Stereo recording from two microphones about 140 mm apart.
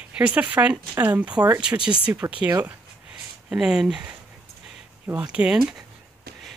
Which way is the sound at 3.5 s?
5° right (ahead or behind).